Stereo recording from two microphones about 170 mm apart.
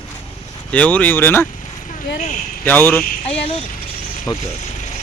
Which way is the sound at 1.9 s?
50° left (ahead or behind).